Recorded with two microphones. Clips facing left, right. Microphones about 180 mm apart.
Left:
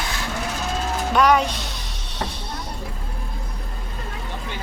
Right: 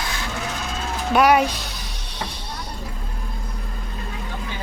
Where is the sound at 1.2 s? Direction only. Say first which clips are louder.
Right 2 dB; 10° right (ahead or behind).